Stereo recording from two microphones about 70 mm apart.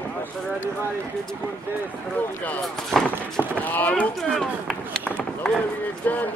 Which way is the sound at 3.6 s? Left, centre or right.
Left.